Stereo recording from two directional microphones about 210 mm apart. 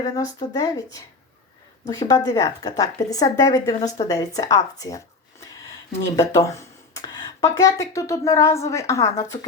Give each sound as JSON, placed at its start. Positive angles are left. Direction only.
{"t": 0.0, "sound": "speech", "side_deg": 15}